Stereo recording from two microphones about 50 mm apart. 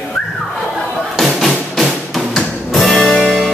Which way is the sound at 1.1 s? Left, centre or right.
Centre.